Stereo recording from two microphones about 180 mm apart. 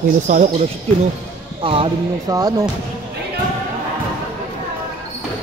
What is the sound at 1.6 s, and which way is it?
Speech, 30° right (ahead or behind).